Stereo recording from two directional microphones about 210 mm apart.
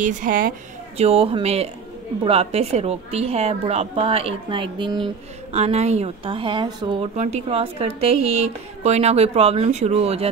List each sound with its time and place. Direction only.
0.0 s a woman's voice: 40° right (ahead or behind)
1.0 s a woman's voice: 25° right (ahead or behind)